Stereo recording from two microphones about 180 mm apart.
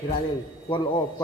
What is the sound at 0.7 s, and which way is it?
Speech, 30° left (ahead or behind).